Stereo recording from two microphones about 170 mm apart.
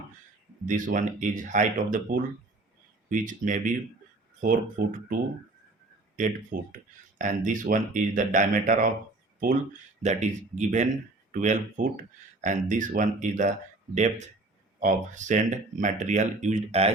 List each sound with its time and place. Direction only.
0.6 s speech: 50° right (ahead or behind)
10.0 s speech: 45° right (ahead or behind)